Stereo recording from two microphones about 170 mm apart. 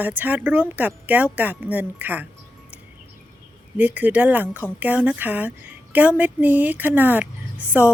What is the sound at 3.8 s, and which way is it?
Speech, 10° right (ahead or behind).